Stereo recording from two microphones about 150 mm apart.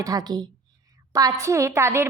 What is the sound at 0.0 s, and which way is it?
A woman's voice, 25° right (ahead or behind).